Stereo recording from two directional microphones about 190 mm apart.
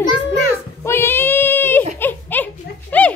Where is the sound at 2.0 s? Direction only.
10° left (ahead or behind).